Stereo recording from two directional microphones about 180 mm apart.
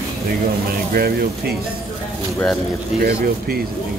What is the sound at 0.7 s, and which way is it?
Speech, 55° right (ahead or behind).